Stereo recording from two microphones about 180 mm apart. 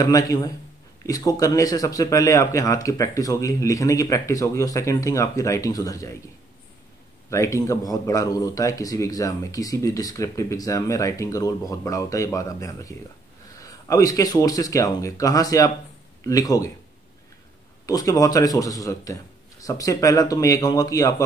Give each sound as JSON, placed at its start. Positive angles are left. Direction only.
{"t": 0.0, "sound": "speech", "side_deg": 20}
{"t": 7.2, "sound": "speech", "side_deg": 15}
{"t": 17.8, "sound": "speech", "side_deg": 20}